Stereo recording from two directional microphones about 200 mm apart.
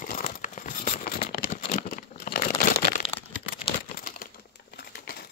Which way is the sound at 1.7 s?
40° left (ahead or behind).